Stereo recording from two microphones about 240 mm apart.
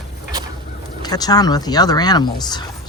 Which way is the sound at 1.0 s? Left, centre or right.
Centre.